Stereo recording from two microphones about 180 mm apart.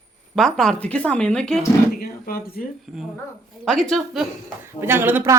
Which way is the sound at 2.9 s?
Centre (ahead or behind).